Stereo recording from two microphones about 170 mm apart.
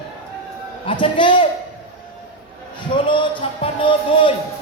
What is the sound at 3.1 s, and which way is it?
Music, 30° left (ahead or behind).